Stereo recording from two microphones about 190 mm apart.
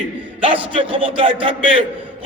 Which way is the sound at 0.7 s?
25° right (ahead or behind).